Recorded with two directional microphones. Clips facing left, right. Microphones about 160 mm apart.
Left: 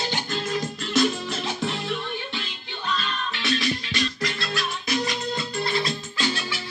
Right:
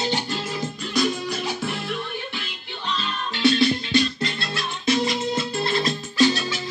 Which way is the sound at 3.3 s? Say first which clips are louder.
Right 9 dB; 30° right (ahead or behind).